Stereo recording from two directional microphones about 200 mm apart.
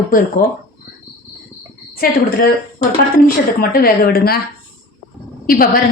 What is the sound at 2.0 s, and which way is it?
Speech, 45° left (ahead or behind).